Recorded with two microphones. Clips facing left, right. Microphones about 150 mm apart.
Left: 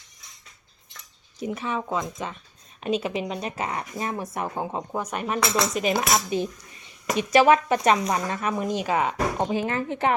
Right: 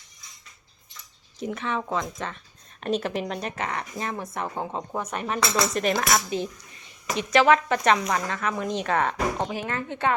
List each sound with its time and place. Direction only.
1.5 s a woman's voice: 10° left (ahead or behind)
3.5 s a woman's voice: 15° left (ahead or behind)
9.5 s speech: 25° left (ahead or behind)